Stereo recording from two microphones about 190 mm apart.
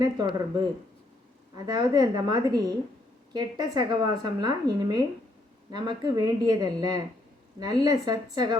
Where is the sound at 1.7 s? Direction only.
20° right (ahead or behind).